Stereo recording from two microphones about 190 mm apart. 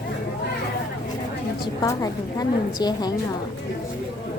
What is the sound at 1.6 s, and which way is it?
A woman's voice, 20° left (ahead or behind).